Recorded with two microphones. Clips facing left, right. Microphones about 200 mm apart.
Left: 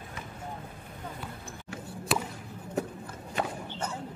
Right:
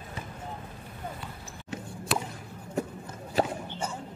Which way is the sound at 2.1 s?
Centre (ahead or behind).